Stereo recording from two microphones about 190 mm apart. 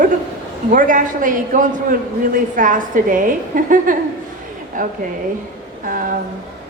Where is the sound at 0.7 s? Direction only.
45° right (ahead or behind).